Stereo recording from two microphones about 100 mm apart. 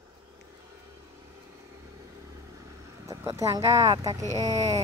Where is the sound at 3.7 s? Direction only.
35° right (ahead or behind).